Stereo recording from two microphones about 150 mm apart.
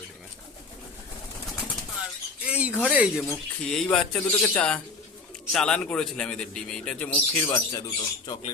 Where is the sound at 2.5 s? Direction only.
10° right (ahead or behind).